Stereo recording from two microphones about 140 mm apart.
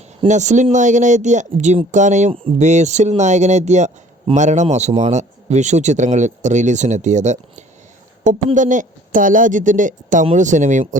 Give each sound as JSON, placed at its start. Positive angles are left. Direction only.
{"t": 0.3, "sound": "a woman's voice", "side_deg": -60}